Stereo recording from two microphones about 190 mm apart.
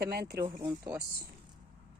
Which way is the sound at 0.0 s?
55° right (ahead or behind).